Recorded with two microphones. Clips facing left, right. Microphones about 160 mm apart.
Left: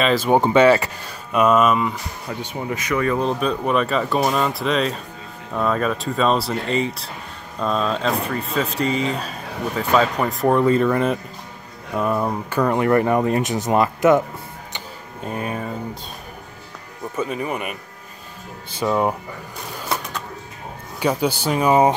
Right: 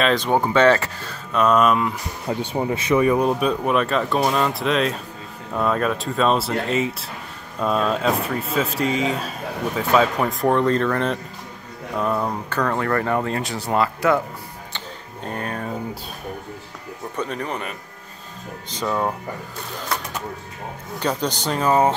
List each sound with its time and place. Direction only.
0.0 s speech: 5° left (ahead or behind)
0.3 s speech: 20° left (ahead or behind); by 2.0 s centre (ahead or behind)
2.2 s speech: 30° right (ahead or behind)
3.0 s speech: 15° right (ahead or behind); by 14.2 s 20° left (ahead or behind)
15.2 s speech: 5° left (ahead or behind)
17.1 s speech: 5° left (ahead or behind)
21.0 s speech: 10° left (ahead or behind)